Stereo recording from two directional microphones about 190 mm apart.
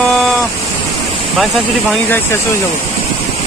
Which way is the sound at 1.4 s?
Centre (ahead or behind).